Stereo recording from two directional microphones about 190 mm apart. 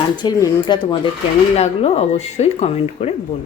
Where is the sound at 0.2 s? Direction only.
20° left (ahead or behind).